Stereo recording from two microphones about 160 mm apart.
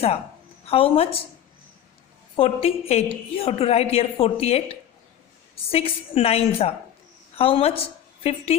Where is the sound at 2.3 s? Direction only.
35° left (ahead or behind).